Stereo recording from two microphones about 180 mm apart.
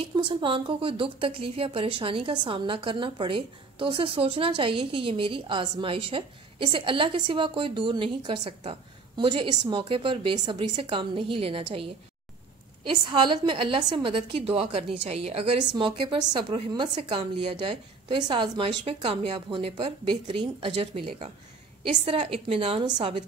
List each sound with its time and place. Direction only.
0.0 s a woman's voice: 25° right (ahead or behind)